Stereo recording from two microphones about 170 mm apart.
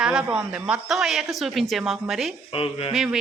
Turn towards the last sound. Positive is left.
turn(degrees=-5)  # may be behind; listen again after turning